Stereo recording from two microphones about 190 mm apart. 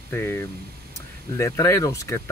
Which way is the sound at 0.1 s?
15° left (ahead or behind).